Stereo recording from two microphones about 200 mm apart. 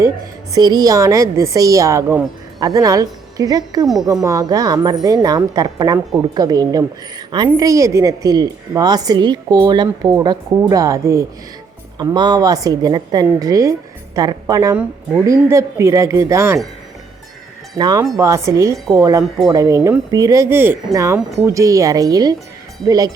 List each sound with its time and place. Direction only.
0.5 s a woman's voice: 20° right (ahead or behind)
17.7 s a woman's voice: 20° right (ahead or behind)